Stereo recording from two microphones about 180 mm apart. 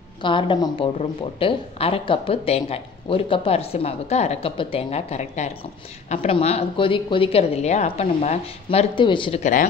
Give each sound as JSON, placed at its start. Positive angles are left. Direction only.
{"t": 0.2, "sound": "a woman's voice", "side_deg": 25}
{"t": 9.4, "sound": "speech", "side_deg": 45}